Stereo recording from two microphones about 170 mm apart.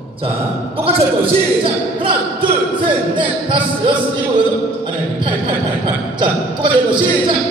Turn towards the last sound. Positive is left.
turn(degrees=-30)  # may be behind; listen again after turning